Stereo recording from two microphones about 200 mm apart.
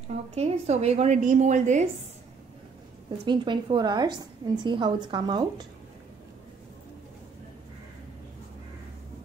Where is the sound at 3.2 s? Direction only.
25° right (ahead or behind).